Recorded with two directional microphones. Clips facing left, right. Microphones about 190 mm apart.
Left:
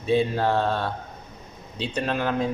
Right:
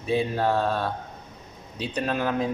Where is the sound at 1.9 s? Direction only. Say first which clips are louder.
Even; 15° right (ahead or behind).